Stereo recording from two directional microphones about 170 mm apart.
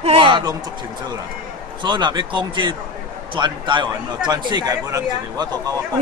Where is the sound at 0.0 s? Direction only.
35° right (ahead or behind).